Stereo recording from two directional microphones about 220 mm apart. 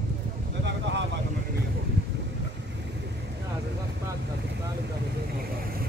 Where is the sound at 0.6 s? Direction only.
55° right (ahead or behind).